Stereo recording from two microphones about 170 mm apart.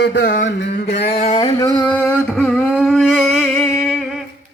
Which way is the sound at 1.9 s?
10° left (ahead or behind).